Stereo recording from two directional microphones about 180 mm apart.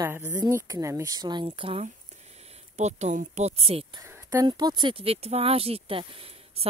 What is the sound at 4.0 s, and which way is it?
Speech, 20° right (ahead or behind).